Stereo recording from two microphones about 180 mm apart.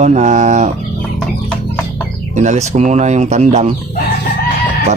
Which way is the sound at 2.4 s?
40° right (ahead or behind).